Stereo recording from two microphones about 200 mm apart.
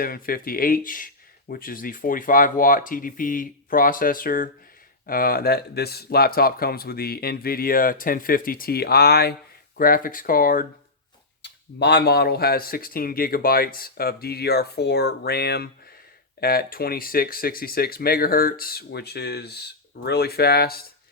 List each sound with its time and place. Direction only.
0.0 s speech: 45° left (ahead or behind)
11.4 s speech: 55° left (ahead or behind)